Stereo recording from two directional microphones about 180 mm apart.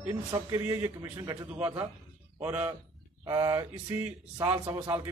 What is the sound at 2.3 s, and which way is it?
Speech, 10° right (ahead or behind).